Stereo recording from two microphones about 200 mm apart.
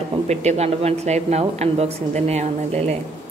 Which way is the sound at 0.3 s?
35° right (ahead or behind).